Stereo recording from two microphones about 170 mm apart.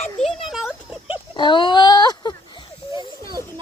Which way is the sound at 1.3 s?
30° left (ahead or behind).